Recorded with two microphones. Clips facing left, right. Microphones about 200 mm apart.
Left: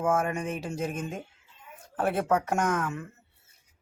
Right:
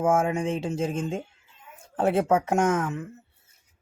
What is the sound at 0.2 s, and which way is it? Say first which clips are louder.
Speech: right 5 dB; 25° right (ahead or behind).